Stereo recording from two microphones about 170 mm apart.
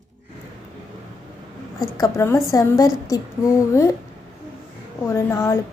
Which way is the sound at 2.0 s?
15° left (ahead or behind).